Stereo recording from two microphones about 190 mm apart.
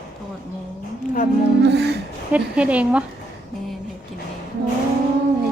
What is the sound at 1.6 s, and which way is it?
Humming, 65° right (ahead or behind).